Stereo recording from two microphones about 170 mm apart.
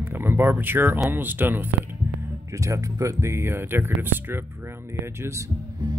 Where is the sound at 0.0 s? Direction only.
15° right (ahead or behind).